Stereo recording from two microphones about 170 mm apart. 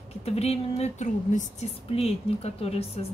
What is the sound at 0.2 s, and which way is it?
A woman's voice, 40° left (ahead or behind).